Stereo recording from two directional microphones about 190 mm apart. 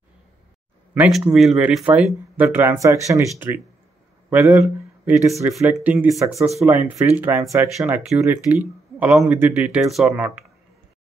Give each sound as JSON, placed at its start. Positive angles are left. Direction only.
{"t": 0.9, "sound": "speech", "side_deg": -5}